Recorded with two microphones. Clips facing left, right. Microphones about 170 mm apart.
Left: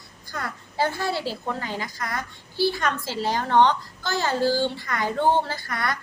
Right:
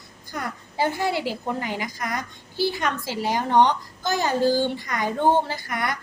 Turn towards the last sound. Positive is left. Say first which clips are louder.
# right 1 dB
turn(degrees=-15)  # may be behind; listen again after turning